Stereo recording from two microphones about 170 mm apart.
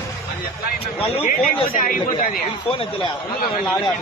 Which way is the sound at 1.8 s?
55° left (ahead or behind).